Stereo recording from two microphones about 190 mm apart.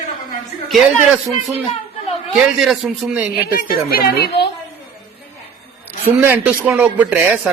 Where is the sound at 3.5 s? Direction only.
50° left (ahead or behind).